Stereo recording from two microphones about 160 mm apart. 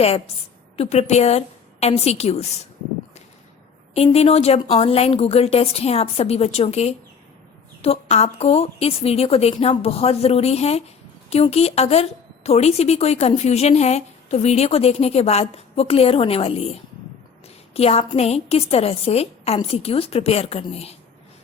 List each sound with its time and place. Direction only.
0.8 s a woman's voice: 40° left (ahead or behind)
3.9 s a woman's voice: 40° left (ahead or behind)
17.7 s a woman's voice: 40° left (ahead or behind)